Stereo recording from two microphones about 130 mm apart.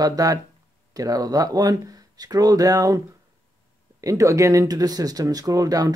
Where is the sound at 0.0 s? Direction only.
30° right (ahead or behind).